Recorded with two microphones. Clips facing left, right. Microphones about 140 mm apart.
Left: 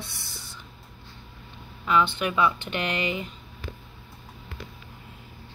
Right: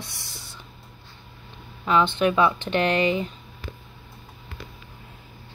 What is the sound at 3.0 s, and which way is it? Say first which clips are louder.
Speech: right 7 dB; 20° right (ahead or behind).